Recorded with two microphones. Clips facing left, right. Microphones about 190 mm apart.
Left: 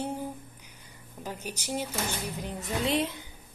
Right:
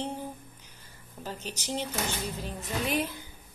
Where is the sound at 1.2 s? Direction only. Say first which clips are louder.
Left 1 dB; 15° left (ahead or behind).